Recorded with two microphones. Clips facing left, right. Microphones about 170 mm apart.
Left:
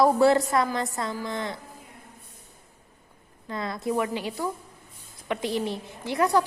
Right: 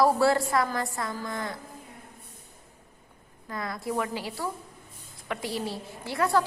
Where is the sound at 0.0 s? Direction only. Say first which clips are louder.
Left 3 dB; 20° left (ahead or behind).